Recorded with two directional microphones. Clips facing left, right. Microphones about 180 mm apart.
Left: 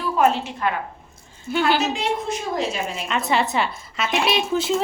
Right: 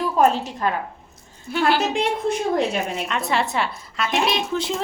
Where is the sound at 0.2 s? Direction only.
40° right (ahead or behind).